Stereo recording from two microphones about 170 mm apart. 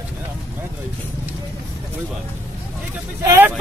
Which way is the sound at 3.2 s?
20° right (ahead or behind).